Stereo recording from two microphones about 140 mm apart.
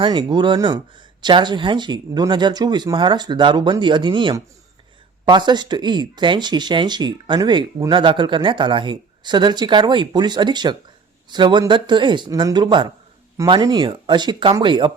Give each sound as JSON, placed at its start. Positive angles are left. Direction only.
{"t": 0.0, "sound": "speech", "side_deg": -35}